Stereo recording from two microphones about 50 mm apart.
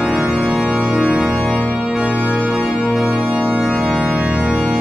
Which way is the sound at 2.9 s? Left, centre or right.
Centre.